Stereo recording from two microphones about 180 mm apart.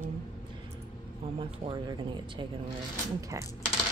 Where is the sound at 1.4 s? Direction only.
25° right (ahead or behind).